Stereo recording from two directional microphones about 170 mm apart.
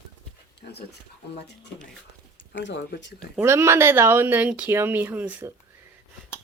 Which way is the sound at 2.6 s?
80° left.